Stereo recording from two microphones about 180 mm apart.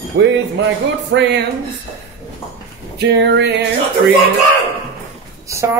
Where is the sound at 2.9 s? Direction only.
75° right (ahead or behind).